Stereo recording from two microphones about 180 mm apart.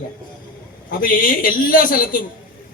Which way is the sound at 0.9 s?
50° left (ahead or behind).